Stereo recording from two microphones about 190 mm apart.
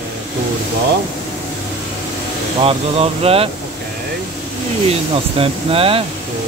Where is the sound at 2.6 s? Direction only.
30° right (ahead or behind).